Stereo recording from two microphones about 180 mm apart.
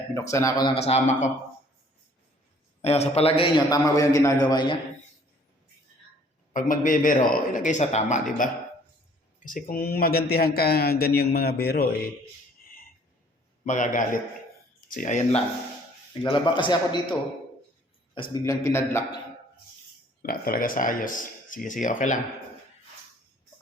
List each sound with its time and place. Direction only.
0.1 s speech: 15° left (ahead or behind)
0.8 s a man's voice: 35° left (ahead or behind)
2.8 s a man's voice: 35° left (ahead or behind)
6.5 s speech: 45° left (ahead or behind)
13.7 s speech: 45° left (ahead or behind)
16.2 s a man's voice: 25° left (ahead or behind)
18.6 s speech: 15° left (ahead or behind)
20.2 s speech: 55° left (ahead or behind)